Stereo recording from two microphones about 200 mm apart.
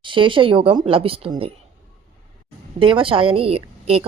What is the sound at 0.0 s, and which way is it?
A woman's voice, 25° right (ahead or behind).